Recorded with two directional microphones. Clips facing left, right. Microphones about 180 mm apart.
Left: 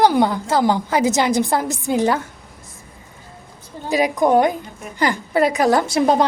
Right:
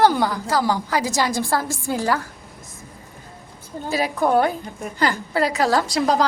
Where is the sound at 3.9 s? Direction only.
15° left (ahead or behind).